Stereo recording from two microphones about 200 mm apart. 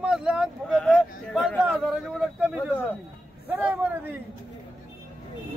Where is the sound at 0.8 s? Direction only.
5° left (ahead or behind).